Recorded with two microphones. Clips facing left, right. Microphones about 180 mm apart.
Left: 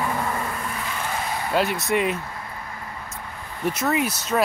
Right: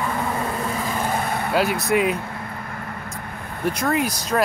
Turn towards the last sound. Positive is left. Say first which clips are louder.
# right 1 dB
turn(degrees=5)  # may be behind; listen again after turning